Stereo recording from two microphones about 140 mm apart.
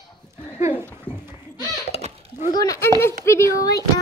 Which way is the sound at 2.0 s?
45° right (ahead or behind).